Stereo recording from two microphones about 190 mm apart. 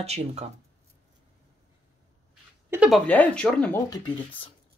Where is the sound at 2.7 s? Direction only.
5° right (ahead or behind).